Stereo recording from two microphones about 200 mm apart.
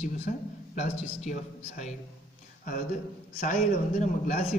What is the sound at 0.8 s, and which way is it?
Speech, 35° left (ahead or behind).